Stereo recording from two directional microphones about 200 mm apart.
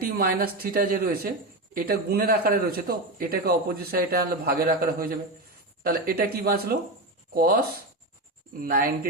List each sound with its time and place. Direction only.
0.0 s a man's voice: 50° right (ahead or behind)
8.6 s a man's voice: 45° right (ahead or behind)